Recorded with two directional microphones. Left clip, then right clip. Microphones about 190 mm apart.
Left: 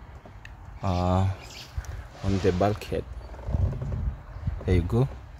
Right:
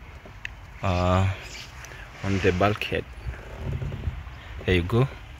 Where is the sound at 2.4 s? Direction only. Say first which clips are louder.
Right 2 dB; 5° left (ahead or behind).